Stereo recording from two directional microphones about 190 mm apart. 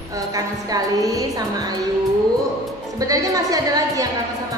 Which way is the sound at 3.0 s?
15° right (ahead or behind).